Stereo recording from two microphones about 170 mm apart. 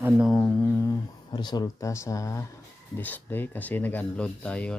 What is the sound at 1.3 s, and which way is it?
Speech, 25° left (ahead or behind).